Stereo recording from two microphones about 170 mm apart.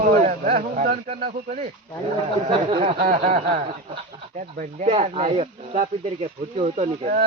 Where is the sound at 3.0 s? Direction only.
55° right (ahead or behind); by 7.1 s 35° right (ahead or behind).